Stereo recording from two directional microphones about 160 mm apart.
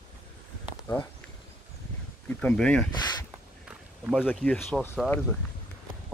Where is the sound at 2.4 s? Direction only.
5° left (ahead or behind).